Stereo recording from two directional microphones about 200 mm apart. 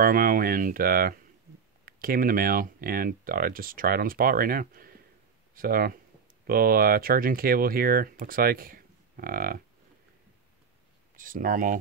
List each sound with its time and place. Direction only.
0.0 s speech: 45° right (ahead or behind)
11.1 s speech: 45° right (ahead or behind)